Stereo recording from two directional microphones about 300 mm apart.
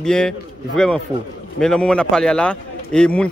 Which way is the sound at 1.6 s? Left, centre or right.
Centre.